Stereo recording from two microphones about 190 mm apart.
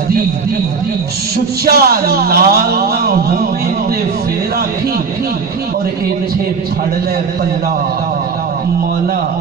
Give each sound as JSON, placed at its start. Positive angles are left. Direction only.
{"t": 1.7, "sound": "speech", "side_deg": -55}